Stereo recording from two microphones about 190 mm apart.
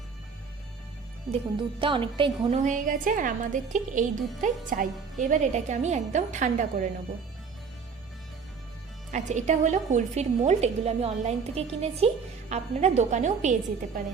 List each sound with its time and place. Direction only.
1.8 s a woman's voice: 25° right (ahead or behind)
2.6 s a woman's voice: 40° right (ahead or behind)
9.1 s a woman's voice: 40° right (ahead or behind)